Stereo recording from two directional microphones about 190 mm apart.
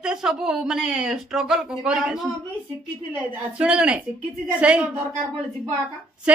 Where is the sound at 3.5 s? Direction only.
5° right (ahead or behind).